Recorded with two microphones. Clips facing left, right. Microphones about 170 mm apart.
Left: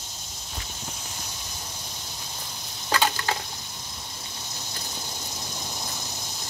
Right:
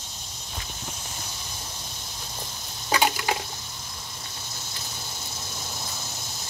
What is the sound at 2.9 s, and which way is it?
Water, 15° right (ahead or behind).